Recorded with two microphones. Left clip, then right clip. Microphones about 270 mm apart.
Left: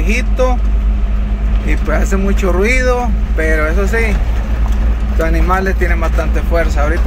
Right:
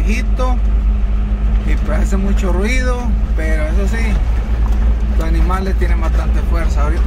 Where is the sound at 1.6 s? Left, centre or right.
Centre.